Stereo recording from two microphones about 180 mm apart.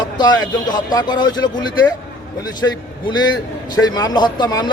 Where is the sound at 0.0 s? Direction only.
25° left (ahead or behind).